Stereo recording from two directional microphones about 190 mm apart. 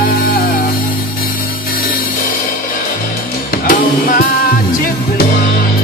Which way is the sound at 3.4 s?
45° left (ahead or behind).